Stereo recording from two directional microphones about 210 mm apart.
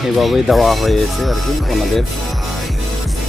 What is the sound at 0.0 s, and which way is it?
Music, centre (ahead or behind).